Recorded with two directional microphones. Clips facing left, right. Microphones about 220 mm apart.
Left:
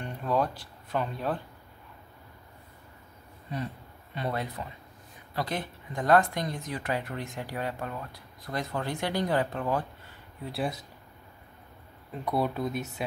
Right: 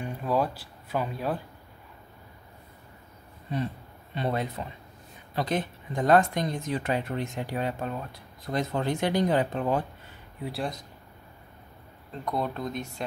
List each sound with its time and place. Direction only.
0.0 s speech: 5° right (ahead or behind)
4.1 s speech: 25° right (ahead or behind)
10.5 s speech: 5° left (ahead or behind)
12.1 s speech: 5° left (ahead or behind)